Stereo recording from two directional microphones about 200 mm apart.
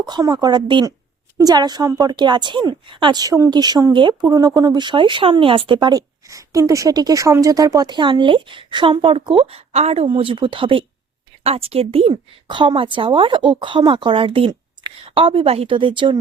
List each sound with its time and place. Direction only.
0.0 s a woman's voice: 20° right (ahead or behind)